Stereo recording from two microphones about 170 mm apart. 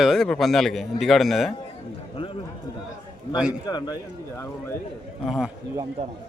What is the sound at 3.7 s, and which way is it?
Speech, 25° left (ahead or behind).